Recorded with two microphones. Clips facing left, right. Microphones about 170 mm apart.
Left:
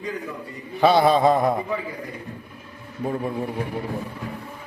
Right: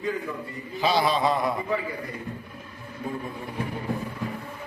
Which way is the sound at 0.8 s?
55° left (ahead or behind).